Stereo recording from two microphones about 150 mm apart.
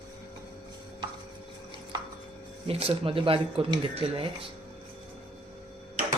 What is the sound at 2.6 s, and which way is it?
Speech, 40° right (ahead or behind).